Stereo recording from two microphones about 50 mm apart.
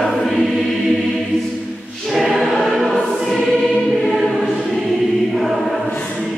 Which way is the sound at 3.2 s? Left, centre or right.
Centre.